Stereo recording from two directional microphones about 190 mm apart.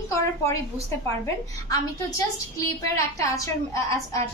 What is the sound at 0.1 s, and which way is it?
A woman's voice, 15° left (ahead or behind).